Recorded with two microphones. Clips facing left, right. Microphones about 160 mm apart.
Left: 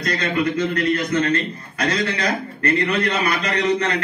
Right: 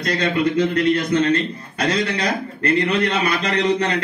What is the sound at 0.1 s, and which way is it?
A man's voice, 30° right (ahead or behind).